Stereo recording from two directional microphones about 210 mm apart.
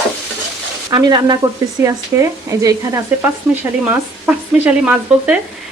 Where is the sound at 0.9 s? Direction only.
20° right (ahead or behind).